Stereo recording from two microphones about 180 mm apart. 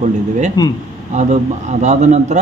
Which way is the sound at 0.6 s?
20° left (ahead or behind).